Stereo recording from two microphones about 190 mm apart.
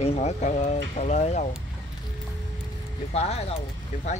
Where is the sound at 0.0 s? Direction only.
35° left (ahead or behind).